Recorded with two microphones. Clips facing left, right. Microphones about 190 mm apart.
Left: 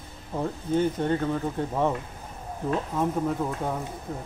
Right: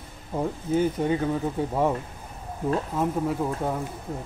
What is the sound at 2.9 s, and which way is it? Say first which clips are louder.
Speech: left 1 dB; 10° right (ahead or behind).